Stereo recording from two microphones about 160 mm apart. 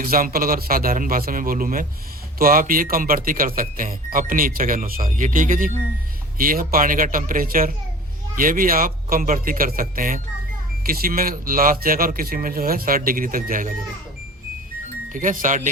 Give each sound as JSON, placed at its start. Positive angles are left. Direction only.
{"t": 0.0, "sound": "speech", "side_deg": -65}
{"t": 15.1, "sound": "speech", "side_deg": -55}